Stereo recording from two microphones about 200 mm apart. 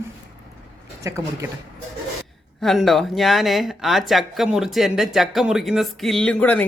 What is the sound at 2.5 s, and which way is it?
Speech, centre (ahead or behind).